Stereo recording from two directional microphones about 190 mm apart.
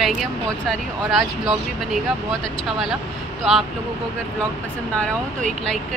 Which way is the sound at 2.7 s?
Centre (ahead or behind).